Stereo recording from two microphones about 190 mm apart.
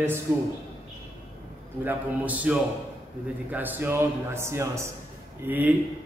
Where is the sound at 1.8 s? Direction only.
10° right (ahead or behind).